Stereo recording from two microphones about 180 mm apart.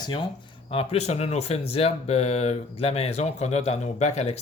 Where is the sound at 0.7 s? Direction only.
35° left (ahead or behind).